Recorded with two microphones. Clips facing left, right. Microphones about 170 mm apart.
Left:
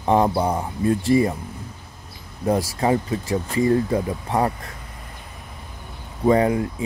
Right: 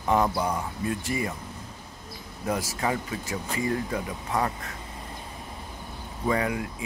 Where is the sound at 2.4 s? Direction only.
35° left (ahead or behind).